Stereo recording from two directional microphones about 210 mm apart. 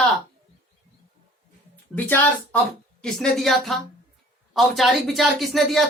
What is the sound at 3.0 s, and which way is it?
Speech, centre (ahead or behind).